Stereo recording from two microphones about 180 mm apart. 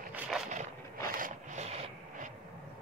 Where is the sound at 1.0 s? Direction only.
50° right (ahead or behind).